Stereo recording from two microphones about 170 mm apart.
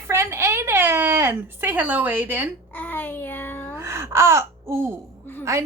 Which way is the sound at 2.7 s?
10° left (ahead or behind).